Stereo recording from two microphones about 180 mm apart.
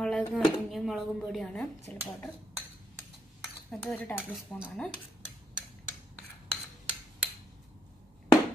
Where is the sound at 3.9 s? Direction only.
10° left (ahead or behind).